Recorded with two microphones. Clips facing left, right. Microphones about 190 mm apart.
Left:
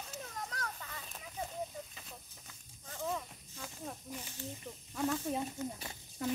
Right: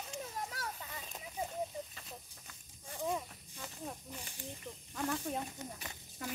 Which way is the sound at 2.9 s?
15° right (ahead or behind).